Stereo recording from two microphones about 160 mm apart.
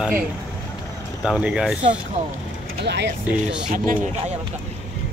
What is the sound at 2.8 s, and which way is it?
Speech, 90° right.